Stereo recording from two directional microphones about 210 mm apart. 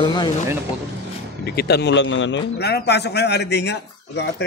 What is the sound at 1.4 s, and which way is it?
Speech, 50° left (ahead or behind).